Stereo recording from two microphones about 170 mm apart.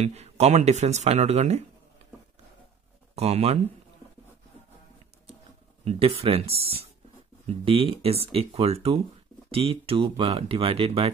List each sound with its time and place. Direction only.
0.0 s speech: 40° right (ahead or behind)
3.2 s speech: 35° right (ahead or behind)
5.9 s speech: 35° right (ahead or behind)